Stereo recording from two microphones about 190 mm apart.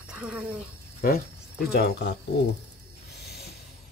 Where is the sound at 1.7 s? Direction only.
60° left (ahead or behind).